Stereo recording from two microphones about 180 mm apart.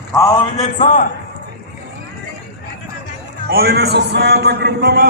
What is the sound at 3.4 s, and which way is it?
A man's voice, 60° right (ahead or behind).